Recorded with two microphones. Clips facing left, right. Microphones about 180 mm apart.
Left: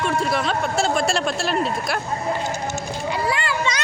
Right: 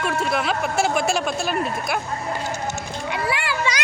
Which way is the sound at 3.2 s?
5° right (ahead or behind).